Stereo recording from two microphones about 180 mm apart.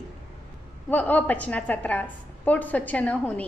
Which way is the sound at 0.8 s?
10° left (ahead or behind).